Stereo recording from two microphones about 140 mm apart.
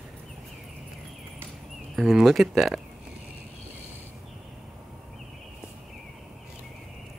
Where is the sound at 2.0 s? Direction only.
Centre (ahead or behind).